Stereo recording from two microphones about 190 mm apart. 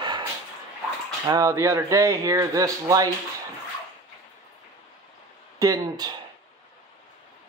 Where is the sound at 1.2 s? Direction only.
20° right (ahead or behind).